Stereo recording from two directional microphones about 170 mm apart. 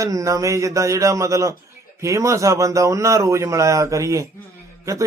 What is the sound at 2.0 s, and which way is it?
Mantra, 20° right (ahead or behind).